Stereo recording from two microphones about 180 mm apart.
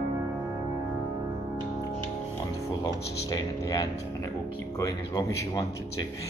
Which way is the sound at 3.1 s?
20° left (ahead or behind).